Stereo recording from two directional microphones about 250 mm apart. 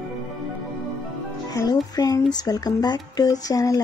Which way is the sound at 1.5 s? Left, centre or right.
Centre.